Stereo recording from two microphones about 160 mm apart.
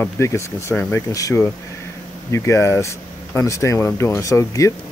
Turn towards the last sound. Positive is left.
turn(degrees=20)  # may be behind; listen again after turning